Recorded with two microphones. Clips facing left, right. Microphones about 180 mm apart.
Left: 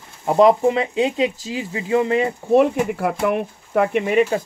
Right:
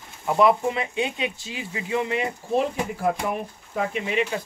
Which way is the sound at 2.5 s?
65° left (ahead or behind).